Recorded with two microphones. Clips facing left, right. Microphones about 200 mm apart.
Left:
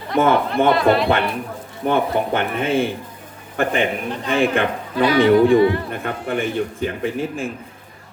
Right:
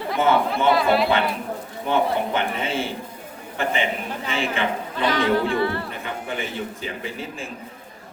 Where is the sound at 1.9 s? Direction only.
55° left (ahead or behind).